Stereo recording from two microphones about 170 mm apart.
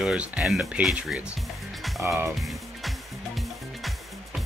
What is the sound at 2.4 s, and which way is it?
Music, centre (ahead or behind).